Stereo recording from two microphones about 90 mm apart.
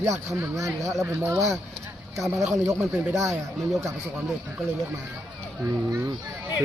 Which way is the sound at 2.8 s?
5° right (ahead or behind).